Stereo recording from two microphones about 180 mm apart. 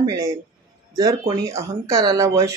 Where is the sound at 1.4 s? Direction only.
20° right (ahead or behind).